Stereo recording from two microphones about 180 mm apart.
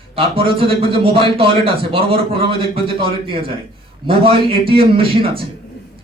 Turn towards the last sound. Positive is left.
turn(degrees=-30)  # may be behind; listen again after turning